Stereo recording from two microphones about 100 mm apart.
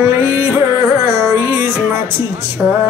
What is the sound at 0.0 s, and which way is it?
Music, 25° right (ahead or behind).